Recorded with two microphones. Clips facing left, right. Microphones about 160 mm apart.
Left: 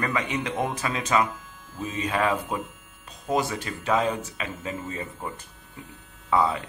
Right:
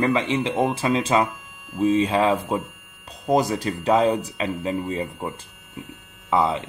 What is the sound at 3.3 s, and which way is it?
Speech, 40° right (ahead or behind).